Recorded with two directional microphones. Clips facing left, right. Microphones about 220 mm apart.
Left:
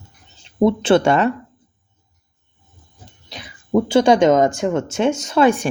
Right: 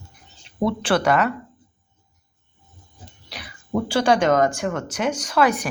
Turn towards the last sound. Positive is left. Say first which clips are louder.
# left 5 dB
turn(degrees=25)  # may be behind; listen again after turning